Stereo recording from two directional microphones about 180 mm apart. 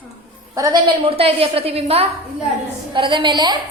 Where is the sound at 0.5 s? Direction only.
20° right (ahead or behind).